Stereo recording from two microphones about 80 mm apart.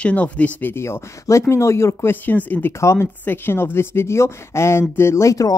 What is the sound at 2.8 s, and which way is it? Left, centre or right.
Speech, left.